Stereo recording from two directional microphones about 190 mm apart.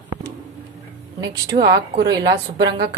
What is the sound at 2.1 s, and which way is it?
Speech, 20° right (ahead or behind).